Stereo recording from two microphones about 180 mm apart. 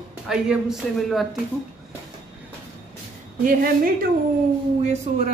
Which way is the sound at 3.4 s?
50° right (ahead or behind).